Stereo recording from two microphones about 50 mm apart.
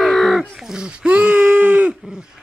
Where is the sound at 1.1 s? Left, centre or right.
Right.